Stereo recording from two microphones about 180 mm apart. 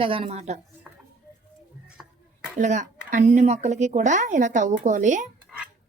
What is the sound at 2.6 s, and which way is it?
A woman's voice, 40° right (ahead or behind).